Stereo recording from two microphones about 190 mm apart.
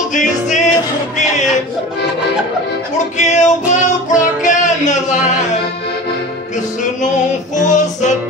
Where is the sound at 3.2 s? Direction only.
40° left (ahead or behind).